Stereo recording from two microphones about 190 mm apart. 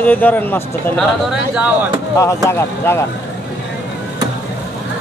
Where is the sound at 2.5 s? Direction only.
15° left (ahead or behind).